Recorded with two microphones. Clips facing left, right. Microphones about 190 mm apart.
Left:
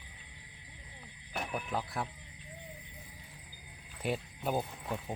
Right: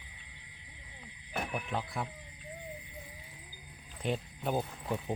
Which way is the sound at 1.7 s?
Centre (ahead or behind).